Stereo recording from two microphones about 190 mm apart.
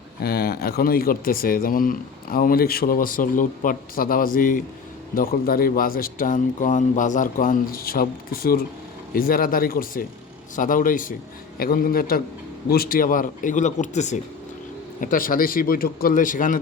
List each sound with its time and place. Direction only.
0.2 s speech: 55° left (ahead or behind)